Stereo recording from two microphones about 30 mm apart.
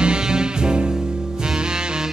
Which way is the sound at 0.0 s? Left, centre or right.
Right.